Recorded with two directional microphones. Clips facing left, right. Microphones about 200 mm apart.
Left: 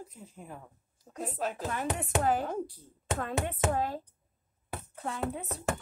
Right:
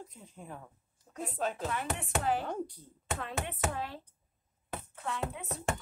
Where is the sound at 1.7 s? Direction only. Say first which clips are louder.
Left 3 dB; 45° left (ahead or behind).